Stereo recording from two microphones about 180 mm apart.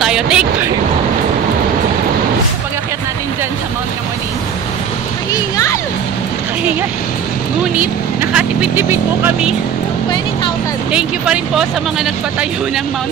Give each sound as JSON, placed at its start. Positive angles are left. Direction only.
{"t": 0.0, "sound": "speech", "side_deg": -5}
{"t": 5.3, "sound": "speech", "side_deg": 20}
{"t": 7.8, "sound": "speech", "side_deg": -5}
{"t": 10.9, "sound": "speech", "side_deg": -5}